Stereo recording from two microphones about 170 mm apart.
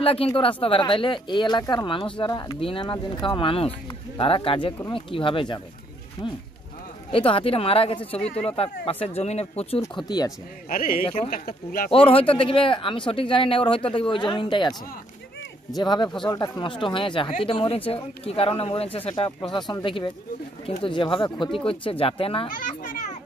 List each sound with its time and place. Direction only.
0.0 s speech: 35° left (ahead or behind)
7.1 s speech: 30° left (ahead or behind)
10.0 s speech: 25° left (ahead or behind)
10.7 s speech: 55° left (ahead or behind)
11.9 s speech: 35° left (ahead or behind)
15.8 s speech: 25° left (ahead or behind)
22.5 s children playing: 50° left (ahead or behind)